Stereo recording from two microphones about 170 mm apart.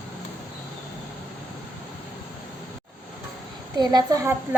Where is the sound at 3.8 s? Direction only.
25° right (ahead or behind).